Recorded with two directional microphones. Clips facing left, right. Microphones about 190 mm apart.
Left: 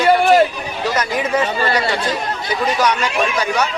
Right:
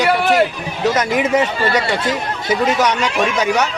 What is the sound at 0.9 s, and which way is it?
Speech, 20° right (ahead or behind).